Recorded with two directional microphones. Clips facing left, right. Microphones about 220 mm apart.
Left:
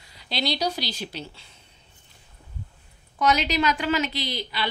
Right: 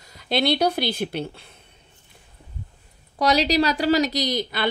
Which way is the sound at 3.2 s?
35° right (ahead or behind).